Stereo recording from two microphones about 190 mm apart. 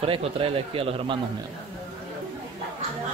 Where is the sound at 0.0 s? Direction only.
30° right (ahead or behind).